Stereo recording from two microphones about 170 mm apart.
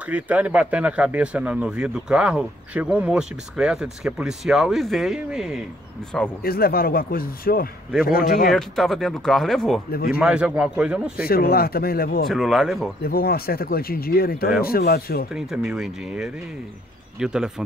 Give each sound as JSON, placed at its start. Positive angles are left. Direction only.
{"t": 0.0, "sound": "speech", "side_deg": -10}
{"t": 6.4, "sound": "speech", "side_deg": 60}
{"t": 8.5, "sound": "speech", "side_deg": 0}
{"t": 9.8, "sound": "speech", "side_deg": 60}
{"t": 10.2, "sound": "speech", "side_deg": -5}
{"t": 11.2, "sound": "speech", "side_deg": 65}
{"t": 12.3, "sound": "speech", "side_deg": 0}
{"t": 13.0, "sound": "speech", "side_deg": 60}
{"t": 15.3, "sound": "speech", "side_deg": -5}